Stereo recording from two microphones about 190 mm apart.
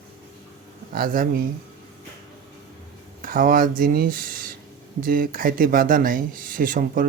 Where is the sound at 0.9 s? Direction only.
50° right (ahead or behind).